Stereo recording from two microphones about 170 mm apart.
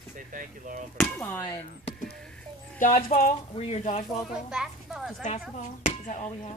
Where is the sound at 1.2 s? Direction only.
15° left (ahead or behind).